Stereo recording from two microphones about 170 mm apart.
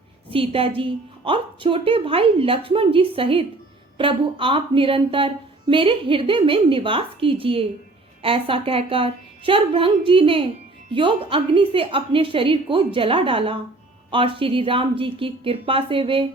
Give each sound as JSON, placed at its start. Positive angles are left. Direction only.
{"t": 0.3, "sound": "a woman's voice", "side_deg": -30}